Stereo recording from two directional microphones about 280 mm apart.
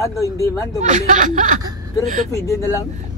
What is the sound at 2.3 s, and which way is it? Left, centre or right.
Speech, centre.